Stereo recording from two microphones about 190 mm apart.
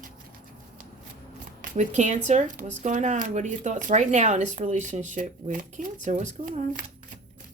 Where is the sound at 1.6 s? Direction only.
40° right (ahead or behind).